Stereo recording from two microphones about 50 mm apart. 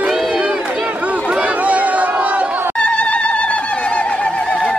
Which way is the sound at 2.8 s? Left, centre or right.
Left.